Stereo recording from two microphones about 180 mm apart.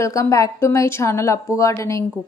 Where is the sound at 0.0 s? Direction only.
15° left (ahead or behind).